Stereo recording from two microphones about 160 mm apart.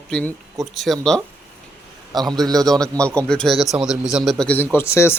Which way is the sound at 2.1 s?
25° right (ahead or behind).